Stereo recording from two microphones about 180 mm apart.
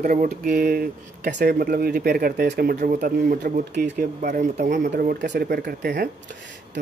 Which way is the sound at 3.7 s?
70° right (ahead or behind).